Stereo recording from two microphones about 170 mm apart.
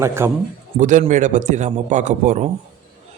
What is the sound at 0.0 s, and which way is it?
Speech, 15° right (ahead or behind).